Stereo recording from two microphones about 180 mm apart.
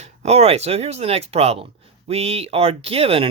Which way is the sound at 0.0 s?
35° right (ahead or behind).